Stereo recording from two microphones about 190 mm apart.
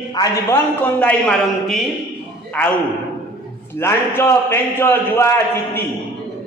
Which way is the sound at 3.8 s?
10° left (ahead or behind).